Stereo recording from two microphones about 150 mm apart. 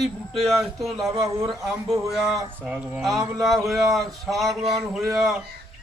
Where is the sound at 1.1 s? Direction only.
25° right (ahead or behind).